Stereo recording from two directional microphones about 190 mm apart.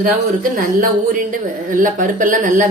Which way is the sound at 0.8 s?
45° right (ahead or behind).